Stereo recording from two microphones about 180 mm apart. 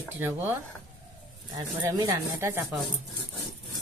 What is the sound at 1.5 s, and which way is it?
Speech, 20° right (ahead or behind).